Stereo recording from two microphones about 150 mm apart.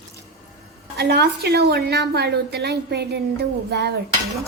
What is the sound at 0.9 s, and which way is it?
A woman's voice, 90° right.